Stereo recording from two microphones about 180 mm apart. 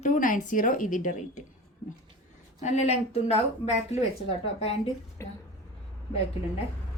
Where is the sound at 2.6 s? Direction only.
40° left (ahead or behind).